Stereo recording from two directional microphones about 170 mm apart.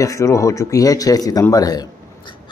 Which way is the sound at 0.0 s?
20° left (ahead or behind).